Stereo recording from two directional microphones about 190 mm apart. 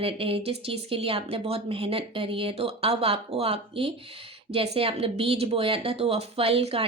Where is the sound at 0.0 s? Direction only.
30° right (ahead or behind).